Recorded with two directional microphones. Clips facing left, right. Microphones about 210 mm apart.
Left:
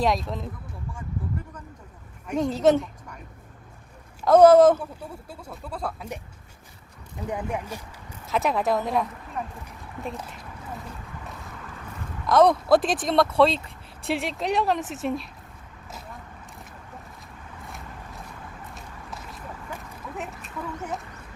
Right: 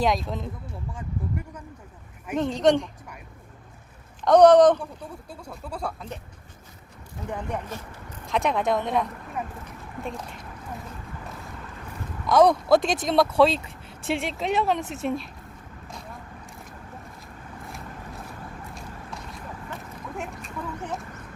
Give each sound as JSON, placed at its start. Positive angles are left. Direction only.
{"t": 0.0, "sound": "speech", "side_deg": 0}
{"t": 0.9, "sound": "a sound", "side_deg": -15}
{"t": 2.4, "sound": "speech", "side_deg": 5}
{"t": 4.2, "sound": "speech", "side_deg": 5}
{"t": 7.5, "sound": "speech", "side_deg": 10}
{"t": 12.2, "sound": "speech", "side_deg": 0}
{"t": 18.7, "sound": "a sound", "side_deg": 0}
{"t": 20.1, "sound": "duck", "side_deg": 0}